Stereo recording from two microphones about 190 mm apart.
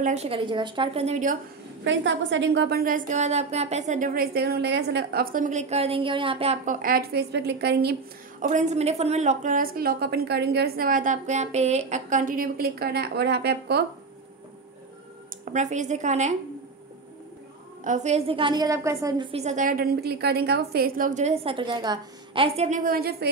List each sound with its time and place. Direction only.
0.0 s a woman's voice: 35° right (ahead or behind)
1.9 s a woman's voice: 75° right (ahead or behind)
8.4 s a woman's voice: 40° right (ahead or behind); by 13.8 s 60° right (ahead or behind)
15.4 s a woman's voice: 40° right (ahead or behind)
17.8 s a woman's voice: 40° right (ahead or behind)
22.7 s a woman's voice: 50° right (ahead or behind)